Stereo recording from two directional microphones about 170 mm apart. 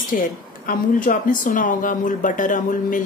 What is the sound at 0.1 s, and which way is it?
Speech, 55° left (ahead or behind).